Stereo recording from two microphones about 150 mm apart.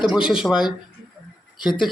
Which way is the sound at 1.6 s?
30° left (ahead or behind).